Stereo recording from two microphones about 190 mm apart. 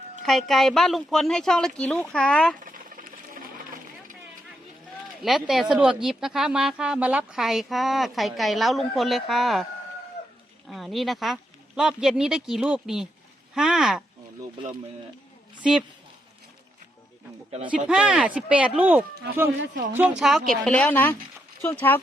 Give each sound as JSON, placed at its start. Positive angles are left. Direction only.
{"t": 0.3, "sound": "speech", "side_deg": 0}
{"t": 2.6, "sound": "sewing machine", "side_deg": -45}
{"t": 5.2, "sound": "speech", "side_deg": 0}
{"t": 10.7, "sound": "speech", "side_deg": 0}
{"t": 17.8, "sound": "speech", "side_deg": -5}